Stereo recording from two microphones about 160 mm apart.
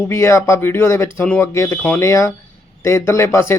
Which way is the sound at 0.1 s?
15° left (ahead or behind).